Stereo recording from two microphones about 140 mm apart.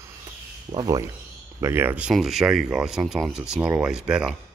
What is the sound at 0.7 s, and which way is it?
Speech, 30° right (ahead or behind).